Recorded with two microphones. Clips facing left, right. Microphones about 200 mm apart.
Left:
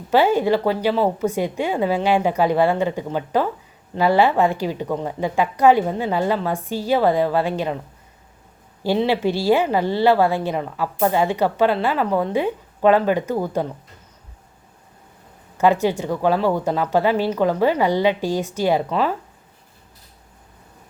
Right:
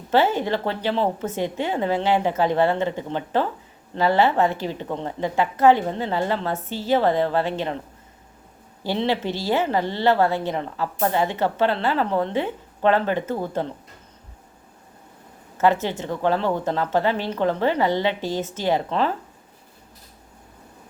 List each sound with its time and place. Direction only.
0.1 s a woman's voice: 15° left (ahead or behind)
8.8 s a woman's voice: 10° left (ahead or behind)
15.6 s a woman's voice: 15° left (ahead or behind)